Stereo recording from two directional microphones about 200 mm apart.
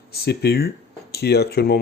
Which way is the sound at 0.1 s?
55° left (ahead or behind).